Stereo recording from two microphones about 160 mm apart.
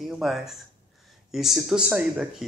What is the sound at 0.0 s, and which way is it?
Speech, centre (ahead or behind).